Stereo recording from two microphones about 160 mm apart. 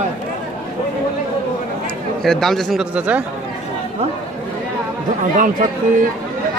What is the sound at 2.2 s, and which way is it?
A man's voice, centre (ahead or behind).